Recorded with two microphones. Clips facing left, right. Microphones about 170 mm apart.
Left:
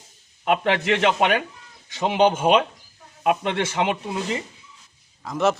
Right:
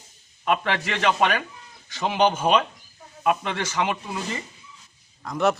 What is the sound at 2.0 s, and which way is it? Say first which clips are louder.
Speech: left 3 dB; 20° left (ahead or behind).